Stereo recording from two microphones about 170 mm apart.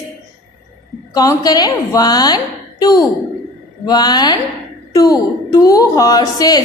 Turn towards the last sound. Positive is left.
turn(degrees=20)  # may be behind; listen again after turning